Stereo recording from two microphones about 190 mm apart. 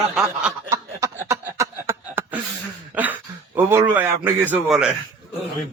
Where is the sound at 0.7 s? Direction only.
15° right (ahead or behind).